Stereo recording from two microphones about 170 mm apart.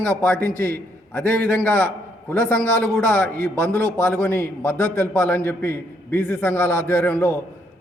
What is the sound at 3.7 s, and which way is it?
Speech, 20° right (ahead or behind).